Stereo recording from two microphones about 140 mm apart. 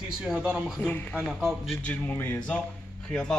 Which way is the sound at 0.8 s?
10° left (ahead or behind).